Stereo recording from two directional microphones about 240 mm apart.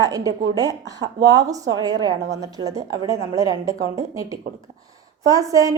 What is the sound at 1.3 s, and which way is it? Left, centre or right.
Speech, centre.